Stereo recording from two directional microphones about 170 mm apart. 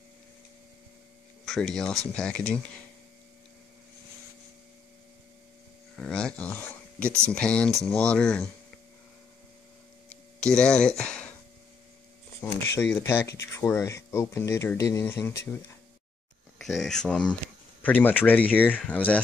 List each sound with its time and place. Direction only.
1.4 s speech: centre (ahead or behind)
5.9 s speech: 5° left (ahead or behind)
10.4 s speech: 5° left (ahead or behind)
12.4 s speech: 15° left (ahead or behind)
16.5 s speech: centre (ahead or behind)